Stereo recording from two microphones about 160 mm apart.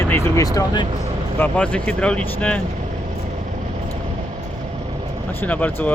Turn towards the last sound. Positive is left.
turn(degrees=10)  # may be behind; listen again after turning